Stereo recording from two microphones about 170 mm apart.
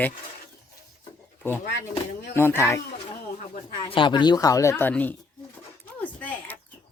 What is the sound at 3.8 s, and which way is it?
A woman's voice, 30° left (ahead or behind).